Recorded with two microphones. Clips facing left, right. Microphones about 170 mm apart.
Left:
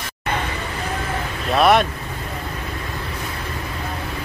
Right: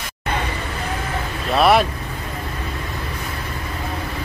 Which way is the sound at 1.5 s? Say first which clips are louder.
Even; centre (ahead or behind).